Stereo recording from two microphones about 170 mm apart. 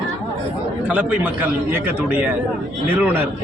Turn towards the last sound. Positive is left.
turn(degrees=-10)  # may be behind; listen again after turning